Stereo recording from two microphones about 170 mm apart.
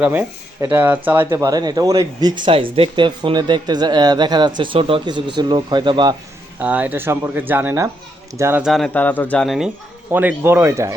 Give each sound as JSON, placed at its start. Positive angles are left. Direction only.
{"t": 0.0, "sound": "speech", "side_deg": -10}
{"t": 6.6, "sound": "speech", "side_deg": -10}
{"t": 8.6, "sound": "speech", "side_deg": 0}
{"t": 10.1, "sound": "speech", "side_deg": -10}